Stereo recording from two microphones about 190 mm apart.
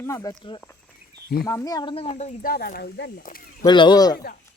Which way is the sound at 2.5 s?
50° left (ahead or behind).